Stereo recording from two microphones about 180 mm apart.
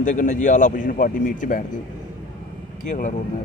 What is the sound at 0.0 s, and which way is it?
Speech, 45° left (ahead or behind).